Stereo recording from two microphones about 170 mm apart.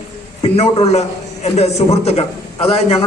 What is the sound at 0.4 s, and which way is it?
A man's voice, 35° left (ahead or behind).